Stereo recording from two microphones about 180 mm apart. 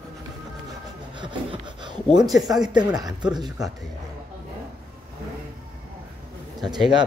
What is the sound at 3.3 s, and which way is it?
Speech, 25° right (ahead or behind).